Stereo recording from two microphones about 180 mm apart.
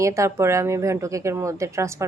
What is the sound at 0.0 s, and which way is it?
Speech, 15° right (ahead or behind).